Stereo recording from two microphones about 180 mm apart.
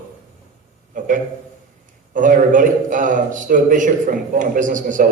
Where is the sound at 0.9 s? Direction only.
45° right (ahead or behind).